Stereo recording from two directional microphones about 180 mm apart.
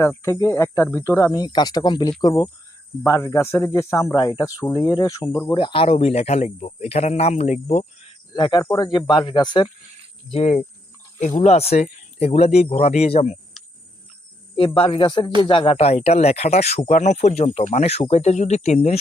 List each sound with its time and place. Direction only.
0.0 s speech: 15° left (ahead or behind); by 7.9 s 40° left (ahead or behind)
8.3 s speech: 25° left (ahead or behind)
10.3 s speech: 40° left (ahead or behind)
14.5 s speech: 30° left (ahead or behind)